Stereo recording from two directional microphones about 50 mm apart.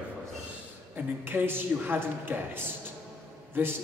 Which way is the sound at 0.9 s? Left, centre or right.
Right.